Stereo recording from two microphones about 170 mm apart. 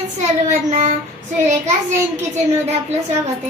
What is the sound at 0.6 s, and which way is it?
Child singing, 45° right (ahead or behind).